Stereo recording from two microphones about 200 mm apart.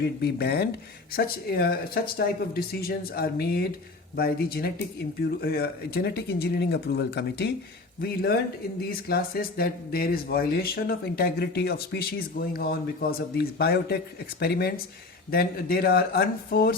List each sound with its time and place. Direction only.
0.0 s speech: 55° left (ahead or behind)